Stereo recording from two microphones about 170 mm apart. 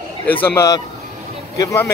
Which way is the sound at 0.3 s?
15° left (ahead or behind).